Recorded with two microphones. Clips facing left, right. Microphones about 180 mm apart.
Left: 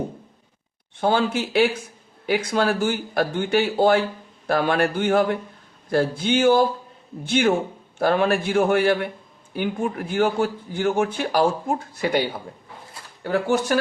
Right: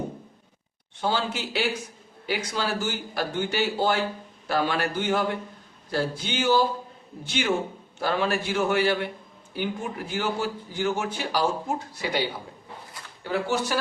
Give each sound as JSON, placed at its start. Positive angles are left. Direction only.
{"t": 1.0, "sound": "a man's voice", "side_deg": 55}